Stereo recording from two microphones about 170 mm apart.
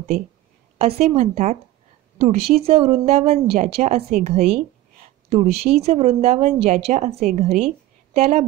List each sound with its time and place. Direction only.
0.7 s a woman's voice: 40° right (ahead or behind)